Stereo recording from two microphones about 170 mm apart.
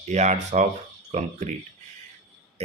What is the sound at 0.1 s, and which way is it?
Speech, 40° right (ahead or behind).